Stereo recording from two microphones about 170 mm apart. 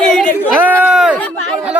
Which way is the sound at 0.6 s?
10° right (ahead or behind).